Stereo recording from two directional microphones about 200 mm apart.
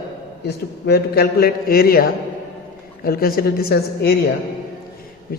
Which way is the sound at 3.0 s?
50° left (ahead or behind).